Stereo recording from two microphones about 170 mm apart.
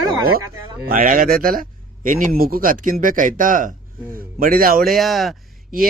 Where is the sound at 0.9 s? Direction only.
55° right (ahead or behind).